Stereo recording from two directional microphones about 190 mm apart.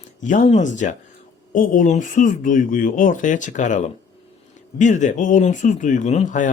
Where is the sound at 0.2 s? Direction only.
40° left (ahead or behind).